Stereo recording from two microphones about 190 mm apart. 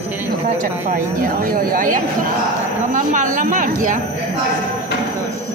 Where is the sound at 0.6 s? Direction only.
45° right (ahead or behind).